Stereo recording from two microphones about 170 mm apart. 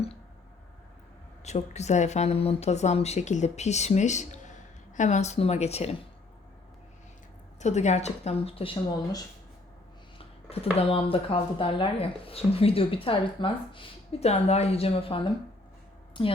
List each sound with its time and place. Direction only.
1.5 s speech: 40° left (ahead or behind)
7.6 s speech: 45° left (ahead or behind)